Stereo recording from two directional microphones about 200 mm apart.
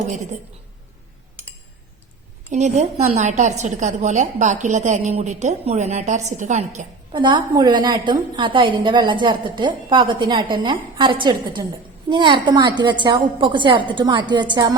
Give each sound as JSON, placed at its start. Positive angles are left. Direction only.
{"t": 2.5, "sound": "a woman's voice", "side_deg": -35}
{"t": 7.1, "sound": "a woman's voice", "side_deg": -20}